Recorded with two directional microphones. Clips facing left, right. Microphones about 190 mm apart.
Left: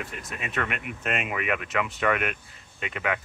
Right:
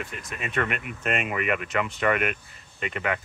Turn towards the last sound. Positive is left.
turn(degrees=0)  # may be behind; listen again after turning